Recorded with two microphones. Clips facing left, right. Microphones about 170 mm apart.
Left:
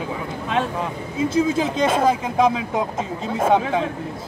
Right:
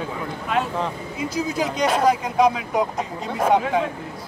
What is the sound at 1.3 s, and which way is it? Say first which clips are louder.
Speech: left 4 dB; 25° left (ahead or behind).